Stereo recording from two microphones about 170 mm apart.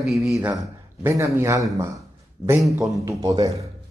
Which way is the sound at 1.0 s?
15° right (ahead or behind).